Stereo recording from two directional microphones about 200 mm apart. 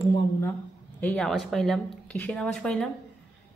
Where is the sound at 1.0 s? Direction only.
5° left (ahead or behind).